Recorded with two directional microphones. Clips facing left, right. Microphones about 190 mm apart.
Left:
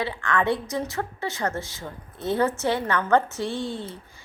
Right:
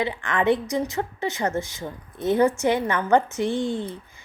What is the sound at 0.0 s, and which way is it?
A woman's voice, 20° right (ahead or behind).